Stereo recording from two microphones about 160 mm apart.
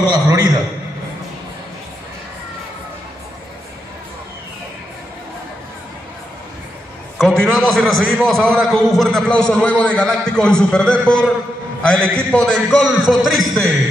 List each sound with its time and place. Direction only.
0.1 s a man's voice: 25° right (ahead or behind)
7.2 s a sound: 5° left (ahead or behind)
7.5 s a man's voice: centre (ahead or behind)